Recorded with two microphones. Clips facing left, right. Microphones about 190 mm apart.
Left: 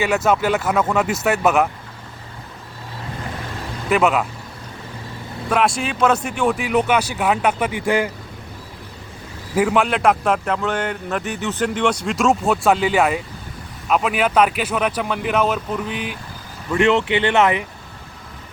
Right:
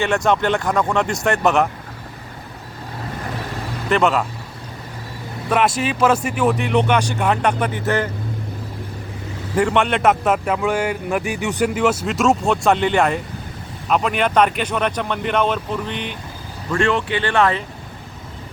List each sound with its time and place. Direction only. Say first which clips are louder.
0.0 s a man's voice: even; 5° left (ahead or behind)
3.8 s a man's voice: even; 5° left (ahead or behind)
5.5 s a man's voice: right 1 dB; 5° right (ahead or behind); by 8.1 s 10° left (ahead or behind)
9.6 s a man's voice: even; 5° left (ahead or behind)
16.7 s speech: left 3 dB; 20° left (ahead or behind)